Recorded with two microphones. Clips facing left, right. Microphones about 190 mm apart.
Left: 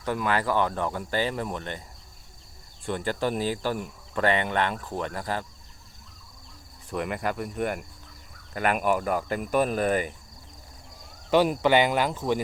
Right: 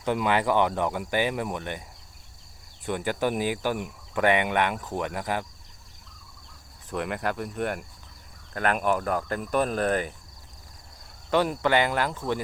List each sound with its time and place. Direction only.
0.0 s speech: 20° right (ahead or behind)
2.8 s speech: 10° right (ahead or behind)
6.9 s speech: 5° left (ahead or behind)
11.4 s speech: 20° left (ahead or behind)